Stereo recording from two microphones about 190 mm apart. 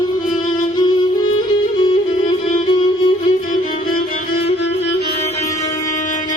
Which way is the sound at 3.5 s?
50° left (ahead or behind).